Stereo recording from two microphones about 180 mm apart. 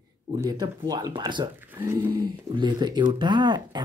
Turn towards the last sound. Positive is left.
turn(degrees=-25)  # may be behind; listen again after turning